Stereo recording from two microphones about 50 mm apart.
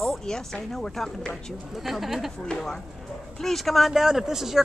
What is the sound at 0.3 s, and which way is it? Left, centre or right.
Speech, centre.